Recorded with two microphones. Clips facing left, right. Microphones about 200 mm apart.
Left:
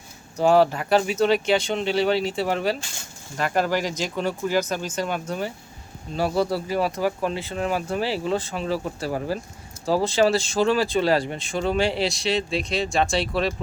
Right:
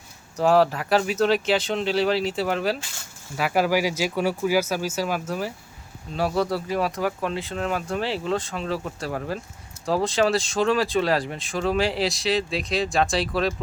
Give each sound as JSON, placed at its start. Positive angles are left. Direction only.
{"t": 0.3, "sound": "speech", "side_deg": 0}